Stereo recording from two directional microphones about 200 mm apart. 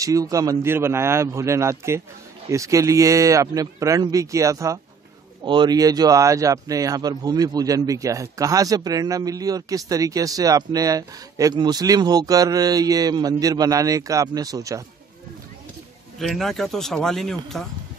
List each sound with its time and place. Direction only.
0.0 s speech: 15° right (ahead or behind)
16.2 s speech: centre (ahead or behind)